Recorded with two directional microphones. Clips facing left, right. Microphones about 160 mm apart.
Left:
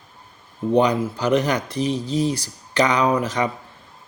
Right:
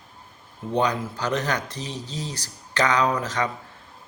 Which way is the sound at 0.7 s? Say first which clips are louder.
Left 6 dB; 10° left (ahead or behind).